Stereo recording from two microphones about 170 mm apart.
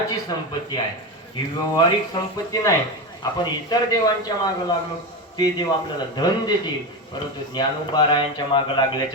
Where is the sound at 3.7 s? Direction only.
20° left (ahead or behind).